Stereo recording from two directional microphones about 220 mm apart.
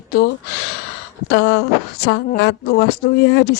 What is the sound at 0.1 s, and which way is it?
Speech, 50° left (ahead or behind).